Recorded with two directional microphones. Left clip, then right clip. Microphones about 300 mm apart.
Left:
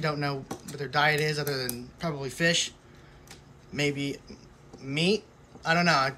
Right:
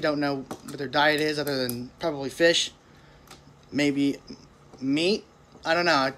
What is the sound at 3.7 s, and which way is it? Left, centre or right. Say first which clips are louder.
Speech: right 5 dB; centre.